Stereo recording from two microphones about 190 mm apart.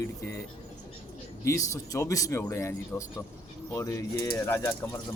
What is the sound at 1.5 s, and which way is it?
Speech, 15° left (ahead or behind).